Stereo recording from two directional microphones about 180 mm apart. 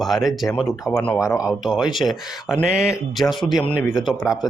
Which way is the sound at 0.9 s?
10° left (ahead or behind).